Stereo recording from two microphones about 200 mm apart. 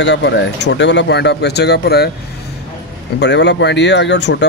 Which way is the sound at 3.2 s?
60° left (ahead or behind).